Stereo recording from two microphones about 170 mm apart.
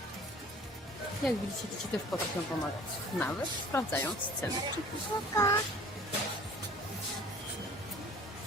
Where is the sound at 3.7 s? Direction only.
15° left (ahead or behind).